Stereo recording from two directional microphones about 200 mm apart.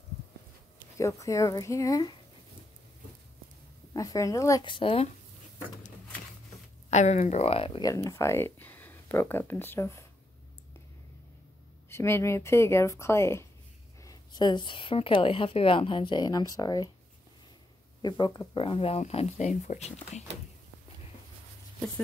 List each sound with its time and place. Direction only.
0.9 s speech: 15° left (ahead or behind)
3.9 s speech: 15° left (ahead or behind)
6.9 s speech: 35° left (ahead or behind)
7.9 s speech: 15° left (ahead or behind)
11.9 s a woman's voice: 15° left (ahead or behind)
18.0 s a woman's voice: 20° left (ahead or behind); by 20.2 s 35° left (ahead or behind)